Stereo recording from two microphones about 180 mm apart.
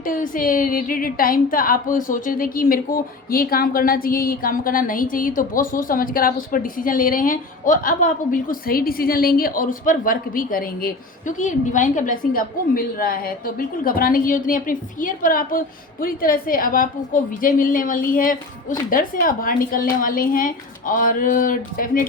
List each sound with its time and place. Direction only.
0.0 s a woman's voice: 50° left (ahead or behind)